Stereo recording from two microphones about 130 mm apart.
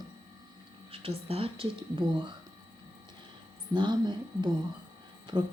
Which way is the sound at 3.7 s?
35° right (ahead or behind).